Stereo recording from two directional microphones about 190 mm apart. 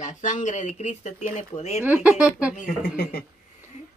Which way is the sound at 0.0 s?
40° left (ahead or behind).